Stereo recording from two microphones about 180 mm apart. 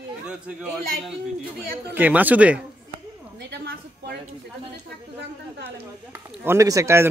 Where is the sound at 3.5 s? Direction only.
65° right (ahead or behind).